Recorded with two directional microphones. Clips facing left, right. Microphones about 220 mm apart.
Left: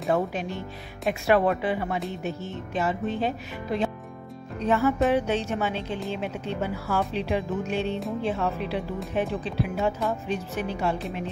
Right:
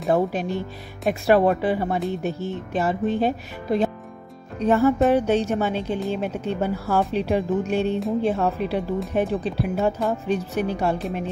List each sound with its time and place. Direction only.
0.1 s speech: 35° right (ahead or behind)